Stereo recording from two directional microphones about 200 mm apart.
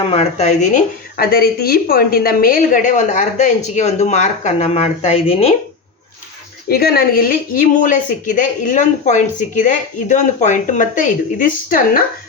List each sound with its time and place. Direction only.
0.0 s speech: 30° left (ahead or behind)
6.7 s speech: 50° left (ahead or behind)